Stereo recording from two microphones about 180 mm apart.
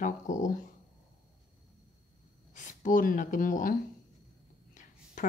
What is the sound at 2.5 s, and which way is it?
Speech, 45° left (ahead or behind).